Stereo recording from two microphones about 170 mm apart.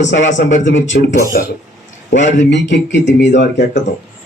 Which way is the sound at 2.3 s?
90° left.